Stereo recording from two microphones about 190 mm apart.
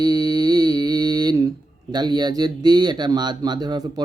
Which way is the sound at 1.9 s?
20° right (ahead or behind).